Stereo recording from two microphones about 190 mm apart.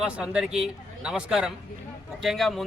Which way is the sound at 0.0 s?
5° right (ahead or behind).